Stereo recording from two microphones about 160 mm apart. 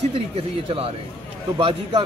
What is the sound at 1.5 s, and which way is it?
Speech, 25° right (ahead or behind).